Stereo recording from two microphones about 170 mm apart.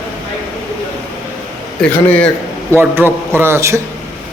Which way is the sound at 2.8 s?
10° right (ahead or behind).